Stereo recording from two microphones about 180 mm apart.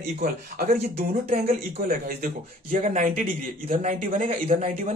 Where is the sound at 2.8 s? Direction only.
40° right (ahead or behind).